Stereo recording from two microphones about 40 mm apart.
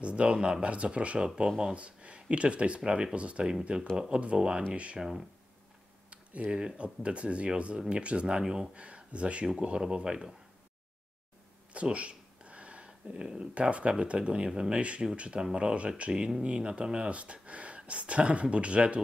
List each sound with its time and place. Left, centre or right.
0.0 s speech: right
1.8 s speech: right
2.8 s speech: centre
3.2 s speech: right
4.7 s speech: right
6.0 s computer keyboard: right
6.5 s speech: centre
8.4 s speech: centre
8.7 s speech: right
11.7 s speech: right
16.1 s speech: centre
16.4 s speech: right